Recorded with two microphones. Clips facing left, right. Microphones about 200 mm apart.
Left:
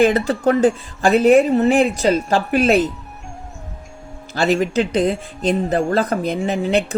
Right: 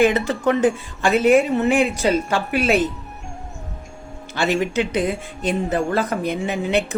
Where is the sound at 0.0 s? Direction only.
35° left (ahead or behind).